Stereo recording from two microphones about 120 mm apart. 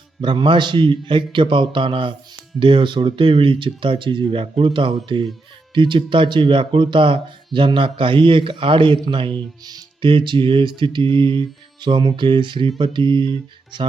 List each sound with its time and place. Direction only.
0.2 s speech: 40° right (ahead or behind)